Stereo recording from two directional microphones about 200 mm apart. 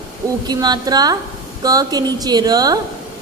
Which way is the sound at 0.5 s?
20° right (ahead or behind).